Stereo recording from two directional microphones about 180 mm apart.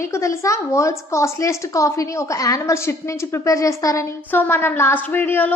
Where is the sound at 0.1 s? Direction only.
15° left (ahead or behind).